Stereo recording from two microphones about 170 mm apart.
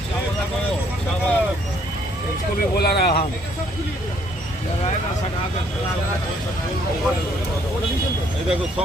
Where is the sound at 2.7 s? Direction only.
65° left (ahead or behind).